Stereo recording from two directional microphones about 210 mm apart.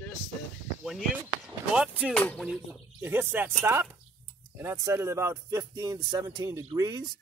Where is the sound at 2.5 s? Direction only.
10° right (ahead or behind).